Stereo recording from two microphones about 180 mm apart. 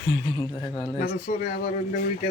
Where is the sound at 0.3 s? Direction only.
25° left (ahead or behind).